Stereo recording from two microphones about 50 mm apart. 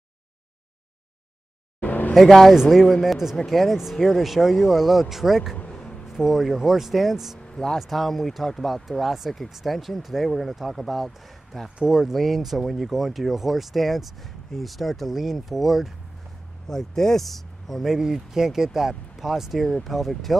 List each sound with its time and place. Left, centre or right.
1.8 s vehicle: left
2.1 s speech: centre
2.5 s speech: centre
2.8 s speech: centre
5.7 s a sound: centre
6.0 s speech: centre
7.3 s vehicle: centre
7.8 s speech: centre
17.9 s speech: centre